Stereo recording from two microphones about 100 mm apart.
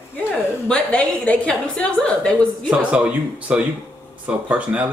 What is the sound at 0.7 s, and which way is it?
A woman's voice, 10° left (ahead or behind).